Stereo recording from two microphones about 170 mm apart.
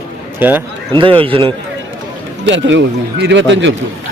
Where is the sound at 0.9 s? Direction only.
30° right (ahead or behind).